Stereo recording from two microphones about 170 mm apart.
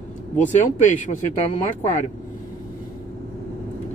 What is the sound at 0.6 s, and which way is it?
Speech, 45° left (ahead or behind).